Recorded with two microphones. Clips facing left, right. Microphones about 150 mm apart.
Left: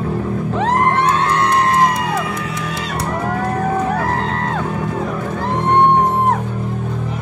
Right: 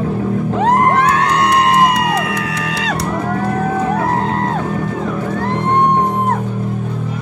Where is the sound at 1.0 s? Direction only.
75° right (ahead or behind).